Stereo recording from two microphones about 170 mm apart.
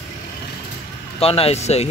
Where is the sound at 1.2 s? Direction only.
35° left (ahead or behind).